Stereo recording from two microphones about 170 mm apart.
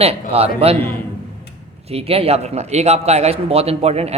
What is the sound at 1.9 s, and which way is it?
A man's voice, 35° right (ahead or behind).